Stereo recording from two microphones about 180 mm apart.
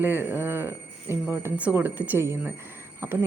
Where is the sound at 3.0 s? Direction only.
15° right (ahead or behind).